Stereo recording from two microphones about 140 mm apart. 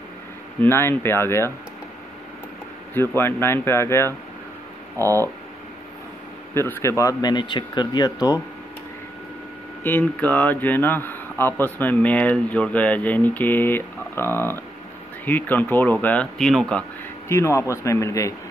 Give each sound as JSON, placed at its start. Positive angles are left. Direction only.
{"t": 0.6, "sound": "a man's voice", "side_deg": 15}
{"t": 2.9, "sound": "a man's voice", "side_deg": 15}
{"t": 4.9, "sound": "speech", "side_deg": -25}
{"t": 6.5, "sound": "speech", "side_deg": 20}
{"t": 9.8, "sound": "a man's voice", "side_deg": 15}
{"t": 17.3, "sound": "speech", "side_deg": 20}